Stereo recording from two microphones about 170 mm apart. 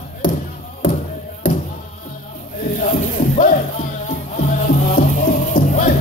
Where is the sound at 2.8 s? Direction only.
50° left (ahead or behind).